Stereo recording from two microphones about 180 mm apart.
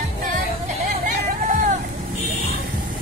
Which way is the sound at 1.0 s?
45° right (ahead or behind).